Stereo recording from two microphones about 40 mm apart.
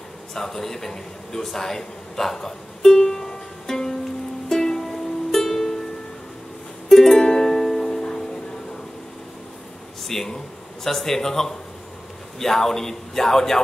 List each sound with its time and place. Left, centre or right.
0.3 s speech: centre
4.5 s music: centre
6.9 s music: centre
10.0 s a man's voice: centre